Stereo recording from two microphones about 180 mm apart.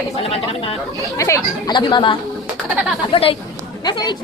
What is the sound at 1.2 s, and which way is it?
A woman's voice, 20° left (ahead or behind).